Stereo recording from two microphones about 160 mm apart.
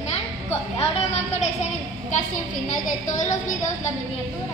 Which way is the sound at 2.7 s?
50° left (ahead or behind).